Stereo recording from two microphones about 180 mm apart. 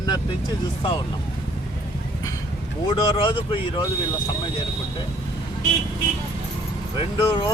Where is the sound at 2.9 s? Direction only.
25° left (ahead or behind).